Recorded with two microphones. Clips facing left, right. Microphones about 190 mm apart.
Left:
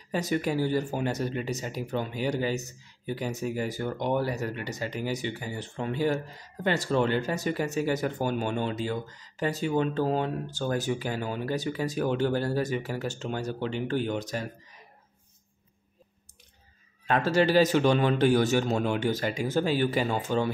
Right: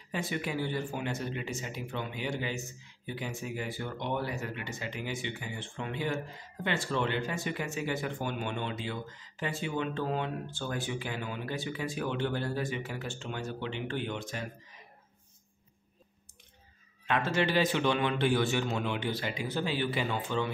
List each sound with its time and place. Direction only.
0.1 s speech: 40° left (ahead or behind)
17.0 s speech: 40° left (ahead or behind)